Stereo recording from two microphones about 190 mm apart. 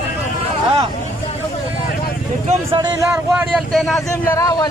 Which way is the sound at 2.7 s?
15° right (ahead or behind).